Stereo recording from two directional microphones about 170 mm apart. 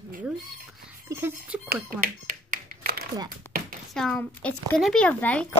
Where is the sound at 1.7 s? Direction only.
55° right (ahead or behind).